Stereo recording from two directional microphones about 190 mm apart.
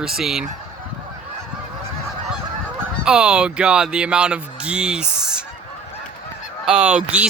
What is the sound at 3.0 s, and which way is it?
Speech, 5° right (ahead or behind).